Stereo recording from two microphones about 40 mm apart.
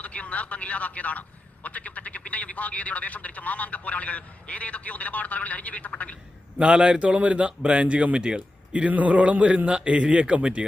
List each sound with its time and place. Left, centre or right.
0.0 s speech: left
6.6 s a man's voice: right